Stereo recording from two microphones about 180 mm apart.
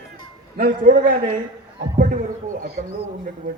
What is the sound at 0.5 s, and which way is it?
A man's voice, 50° right (ahead or behind).